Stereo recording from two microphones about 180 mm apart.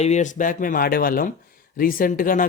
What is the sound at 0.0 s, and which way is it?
Speech, 40° left (ahead or behind).